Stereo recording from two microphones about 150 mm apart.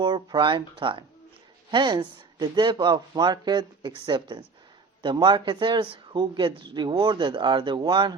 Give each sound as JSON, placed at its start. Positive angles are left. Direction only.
{"t": 0.0, "sound": "speech", "side_deg": -30}